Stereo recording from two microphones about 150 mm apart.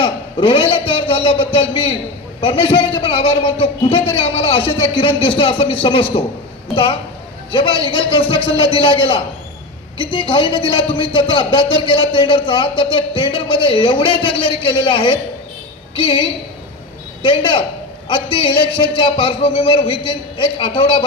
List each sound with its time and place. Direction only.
0.0 s a man's voice: 35° left (ahead or behind)